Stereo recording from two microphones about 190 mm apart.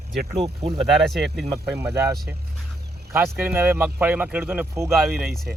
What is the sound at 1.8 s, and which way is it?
Speech, 15° right (ahead or behind).